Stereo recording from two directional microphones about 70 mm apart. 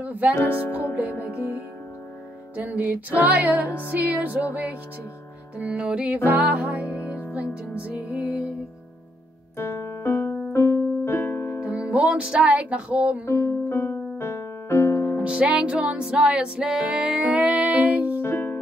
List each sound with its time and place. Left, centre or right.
0.0 s music: right
0.5 s music: left
2.5 s music: right
9.6 s music: left
11.6 s music: centre
13.2 s music: left
15.1 s music: centre
18.2 s music: left